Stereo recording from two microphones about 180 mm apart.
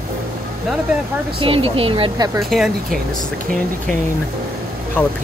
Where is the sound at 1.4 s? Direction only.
30° right (ahead or behind).